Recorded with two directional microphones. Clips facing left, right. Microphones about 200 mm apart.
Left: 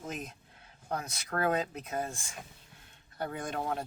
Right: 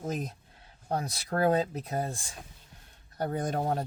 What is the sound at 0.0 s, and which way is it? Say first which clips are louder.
Speech: right 6 dB; 35° right (ahead or behind).